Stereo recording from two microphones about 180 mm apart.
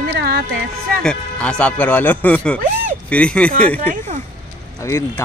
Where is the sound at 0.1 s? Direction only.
60° right (ahead or behind).